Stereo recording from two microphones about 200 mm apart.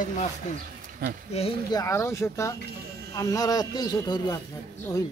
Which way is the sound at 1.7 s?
15° left (ahead or behind).